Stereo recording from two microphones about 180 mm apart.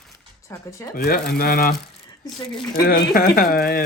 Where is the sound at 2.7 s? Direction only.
55° left (ahead or behind).